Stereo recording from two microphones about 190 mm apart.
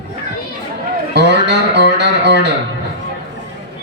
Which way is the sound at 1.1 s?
60° right (ahead or behind).